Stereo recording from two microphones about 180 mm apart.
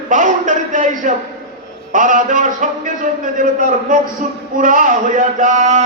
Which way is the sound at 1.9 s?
45° right (ahead or behind).